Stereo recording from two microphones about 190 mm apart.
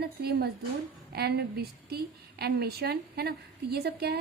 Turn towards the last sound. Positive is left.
turn(degrees=-60)  # may be behind; listen again after turning